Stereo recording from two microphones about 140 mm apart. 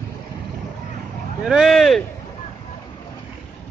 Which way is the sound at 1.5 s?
Centre (ahead or behind).